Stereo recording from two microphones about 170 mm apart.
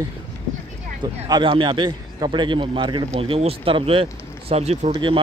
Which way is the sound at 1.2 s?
25° right (ahead or behind).